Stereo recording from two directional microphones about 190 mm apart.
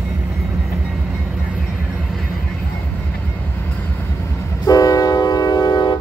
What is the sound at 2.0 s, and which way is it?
Vehicle, centre (ahead or behind).